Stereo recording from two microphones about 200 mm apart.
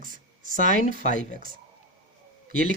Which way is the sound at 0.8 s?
40° left (ahead or behind).